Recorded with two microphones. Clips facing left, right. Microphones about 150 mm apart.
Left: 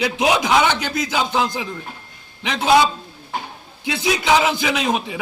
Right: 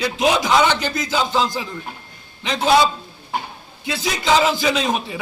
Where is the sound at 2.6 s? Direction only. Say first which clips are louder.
Left 1 dB; 20° left (ahead or behind).